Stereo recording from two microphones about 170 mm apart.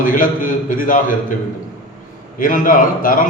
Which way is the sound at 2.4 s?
50° left (ahead or behind).